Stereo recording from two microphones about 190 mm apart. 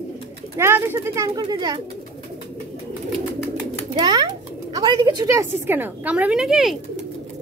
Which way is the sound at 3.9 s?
25° right (ahead or behind).